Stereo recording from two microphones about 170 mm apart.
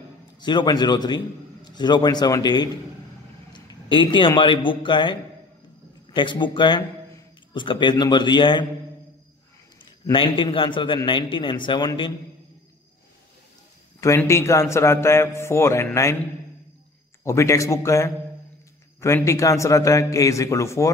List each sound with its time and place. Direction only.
0.4 s a man's voice: 25° left (ahead or behind)
6.1 s a man's voice: 30° left (ahead or behind)
10.0 s a man's voice: 30° left (ahead or behind)
14.0 s a man's voice: 15° left (ahead or behind)
17.2 s a man's voice: 15° left (ahead or behind)